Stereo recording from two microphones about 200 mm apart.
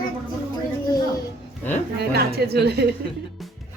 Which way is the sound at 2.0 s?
55° right (ahead or behind).